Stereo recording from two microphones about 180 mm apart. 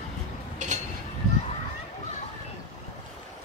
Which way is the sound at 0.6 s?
45° right (ahead or behind).